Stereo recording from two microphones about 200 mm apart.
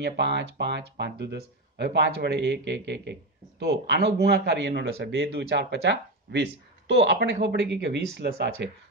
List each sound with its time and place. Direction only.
0.0 s speech: 55° right (ahead or behind)